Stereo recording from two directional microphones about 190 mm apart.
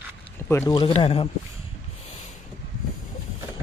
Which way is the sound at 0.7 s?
30° left (ahead or behind).